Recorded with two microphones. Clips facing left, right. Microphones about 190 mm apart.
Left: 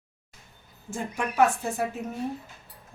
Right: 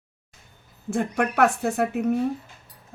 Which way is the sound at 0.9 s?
70° right (ahead or behind).